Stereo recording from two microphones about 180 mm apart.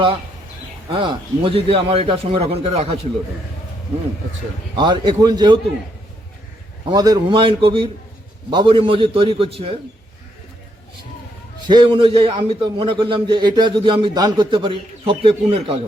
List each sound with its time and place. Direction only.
0.9 s a man's voice: 25° right (ahead or behind)
4.7 s a man's voice: 25° right (ahead or behind)
6.9 s a man's voice: 20° right (ahead or behind)
11.6 s a man's voice: 25° right (ahead or behind)